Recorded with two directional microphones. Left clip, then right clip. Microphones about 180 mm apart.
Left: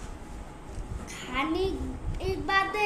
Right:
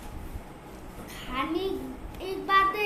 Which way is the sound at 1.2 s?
20° left (ahead or behind).